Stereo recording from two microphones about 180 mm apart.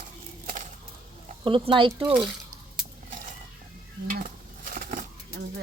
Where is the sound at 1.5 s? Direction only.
30° right (ahead or behind).